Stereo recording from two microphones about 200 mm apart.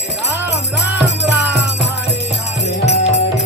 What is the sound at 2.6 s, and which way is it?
Music, 35° left (ahead or behind).